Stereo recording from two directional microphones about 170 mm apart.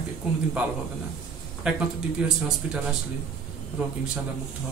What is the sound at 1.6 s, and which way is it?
A man's voice, 5° right (ahead or behind).